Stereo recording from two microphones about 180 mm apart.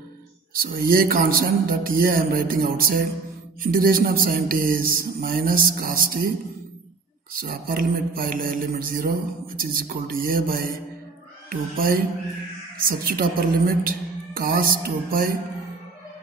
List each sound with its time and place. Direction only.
0.6 s speech: 55° right (ahead or behind)
7.4 s speech: 55° right (ahead or behind)
11.7 s speech: 55° right (ahead or behind)